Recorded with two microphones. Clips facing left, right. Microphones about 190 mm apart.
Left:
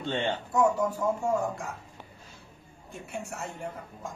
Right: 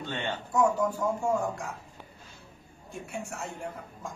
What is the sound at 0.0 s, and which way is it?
Speech, 25° left (ahead or behind).